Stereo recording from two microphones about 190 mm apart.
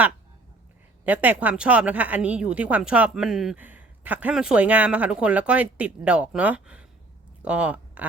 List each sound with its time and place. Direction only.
1.0 s speech: 10° right (ahead or behind)